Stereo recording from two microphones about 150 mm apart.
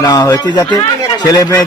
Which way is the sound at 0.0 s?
25° left (ahead or behind).